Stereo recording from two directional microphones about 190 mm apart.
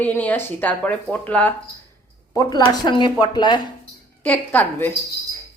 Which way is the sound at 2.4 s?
20° left (ahead or behind).